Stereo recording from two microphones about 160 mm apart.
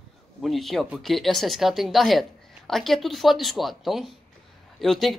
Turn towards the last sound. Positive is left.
turn(degrees=0)  # may be behind; listen again after turning